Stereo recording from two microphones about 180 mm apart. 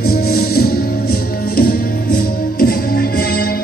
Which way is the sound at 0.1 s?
60° left (ahead or behind).